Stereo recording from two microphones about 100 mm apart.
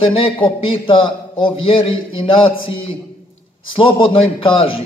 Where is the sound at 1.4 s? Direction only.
65° left (ahead or behind).